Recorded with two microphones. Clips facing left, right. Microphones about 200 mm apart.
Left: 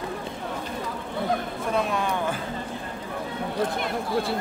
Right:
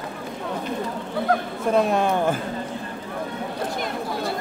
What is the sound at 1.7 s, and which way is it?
Speech, 45° right (ahead or behind).